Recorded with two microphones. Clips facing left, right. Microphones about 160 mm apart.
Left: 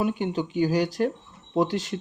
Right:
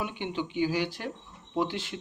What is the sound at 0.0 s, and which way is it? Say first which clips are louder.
Speech: left 7 dB; 40° left (ahead or behind).